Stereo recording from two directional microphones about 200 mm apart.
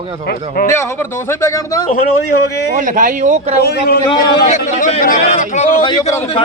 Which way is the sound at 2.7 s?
40° right (ahead or behind).